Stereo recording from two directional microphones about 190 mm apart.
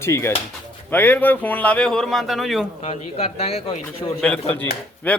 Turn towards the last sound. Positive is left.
turn(degrees=10)  # may be behind; listen again after turning